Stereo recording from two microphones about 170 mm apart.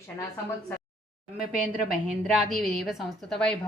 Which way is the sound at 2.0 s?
Centre (ahead or behind).